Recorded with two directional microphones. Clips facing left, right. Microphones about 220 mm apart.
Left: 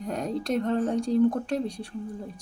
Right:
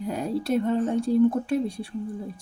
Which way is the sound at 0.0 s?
5° right (ahead or behind).